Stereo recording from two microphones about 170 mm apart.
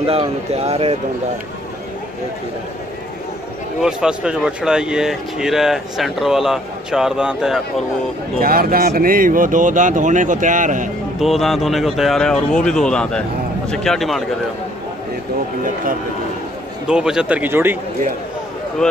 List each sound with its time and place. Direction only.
0.0 s speech: 35° right (ahead or behind)
3.8 s speech: 5° right (ahead or behind)
8.4 s speech: 60° right (ahead or behind)
11.1 s speech: centre (ahead or behind)
15.6 s speech: 55° right (ahead or behind)
16.8 s speech: 5° right (ahead or behind)